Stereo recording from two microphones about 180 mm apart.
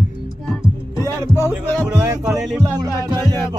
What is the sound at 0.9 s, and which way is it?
Heart sounds, 15° left (ahead or behind).